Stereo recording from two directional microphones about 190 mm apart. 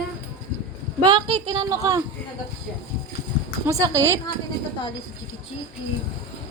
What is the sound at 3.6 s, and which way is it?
Speech, 15° right (ahead or behind).